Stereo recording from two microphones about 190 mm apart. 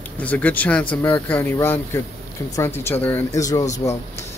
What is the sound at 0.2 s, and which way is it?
Speech, 10° left (ahead or behind).